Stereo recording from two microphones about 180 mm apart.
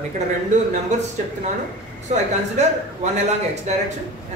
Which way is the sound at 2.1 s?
40° right (ahead or behind).